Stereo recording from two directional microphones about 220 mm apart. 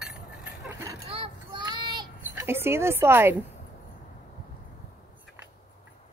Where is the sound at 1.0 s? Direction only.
25° right (ahead or behind).